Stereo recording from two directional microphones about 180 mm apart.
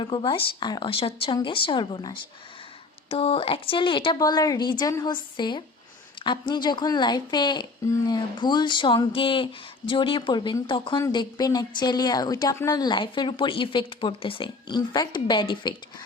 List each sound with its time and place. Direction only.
0.0 s speech: 25° left (ahead or behind)